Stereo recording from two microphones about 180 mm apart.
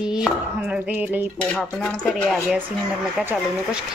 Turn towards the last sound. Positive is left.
turn(degrees=-10)  # may be behind; listen again after turning